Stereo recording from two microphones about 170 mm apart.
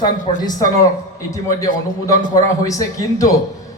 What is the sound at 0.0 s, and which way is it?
A man's voice, 25° left (ahead or behind).